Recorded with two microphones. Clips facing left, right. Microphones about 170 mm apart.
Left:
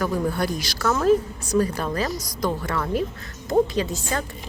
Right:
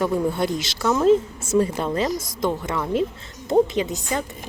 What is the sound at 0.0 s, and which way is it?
Speech, 25° right (ahead or behind).